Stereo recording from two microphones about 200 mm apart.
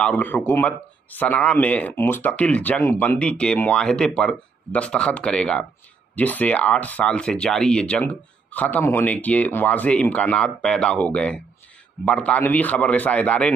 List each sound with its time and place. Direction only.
0.0 s speech: 10° left (ahead or behind)